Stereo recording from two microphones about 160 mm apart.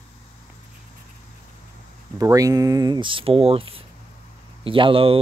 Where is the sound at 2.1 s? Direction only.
20° right (ahead or behind).